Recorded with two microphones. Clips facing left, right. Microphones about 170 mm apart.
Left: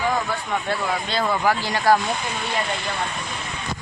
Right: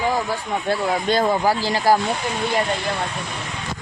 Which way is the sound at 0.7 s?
40° right (ahead or behind).